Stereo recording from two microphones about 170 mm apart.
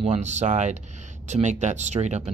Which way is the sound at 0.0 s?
40° right (ahead or behind).